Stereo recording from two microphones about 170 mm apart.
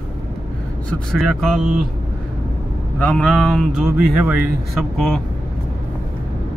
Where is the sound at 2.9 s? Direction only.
5° left (ahead or behind).